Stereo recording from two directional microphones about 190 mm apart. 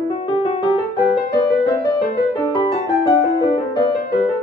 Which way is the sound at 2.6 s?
25° left (ahead or behind).